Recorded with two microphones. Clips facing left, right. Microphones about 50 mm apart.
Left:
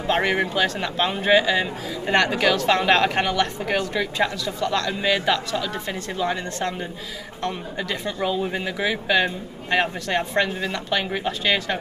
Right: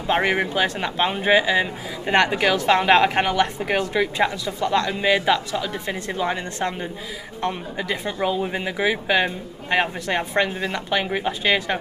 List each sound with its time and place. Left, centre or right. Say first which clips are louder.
0.0 s speech: right 1 dB; centre